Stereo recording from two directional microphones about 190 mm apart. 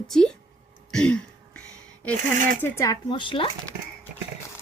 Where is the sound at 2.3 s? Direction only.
45° right (ahead or behind).